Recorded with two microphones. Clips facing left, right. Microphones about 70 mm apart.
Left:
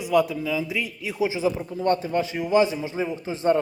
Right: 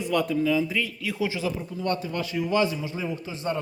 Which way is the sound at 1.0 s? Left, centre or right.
Centre.